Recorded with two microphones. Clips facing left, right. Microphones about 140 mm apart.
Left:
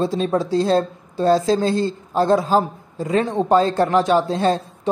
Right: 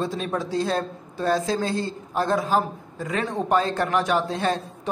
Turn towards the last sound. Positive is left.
turn(degrees=30)  # may be behind; listen again after turning